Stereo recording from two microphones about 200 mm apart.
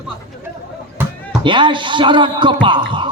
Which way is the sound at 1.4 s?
25° right (ahead or behind).